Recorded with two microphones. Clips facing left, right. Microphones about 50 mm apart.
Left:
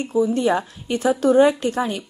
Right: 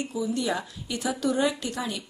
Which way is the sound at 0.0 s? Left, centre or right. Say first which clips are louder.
Left 9 dB; left.